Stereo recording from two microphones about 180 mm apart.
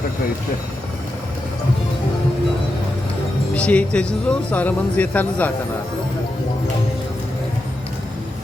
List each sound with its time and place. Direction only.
3.5 s speech: 5° left (ahead or behind)